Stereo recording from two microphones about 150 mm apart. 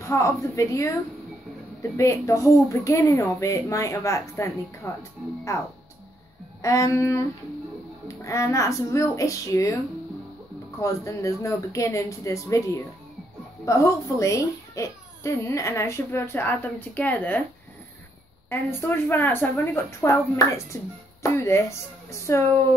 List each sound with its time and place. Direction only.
0.0 s a child's voice: 20° left (ahead or behind)
6.6 s a child's voice: 20° left (ahead or behind)
10.8 s a child's voice: 20° left (ahead or behind)
18.5 s a woman's voice: 15° left (ahead or behind)